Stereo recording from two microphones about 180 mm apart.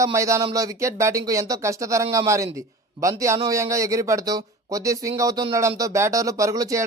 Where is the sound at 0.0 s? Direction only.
15° right (ahead or behind).